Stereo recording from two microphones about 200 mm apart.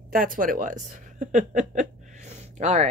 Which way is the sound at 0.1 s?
45° right (ahead or behind).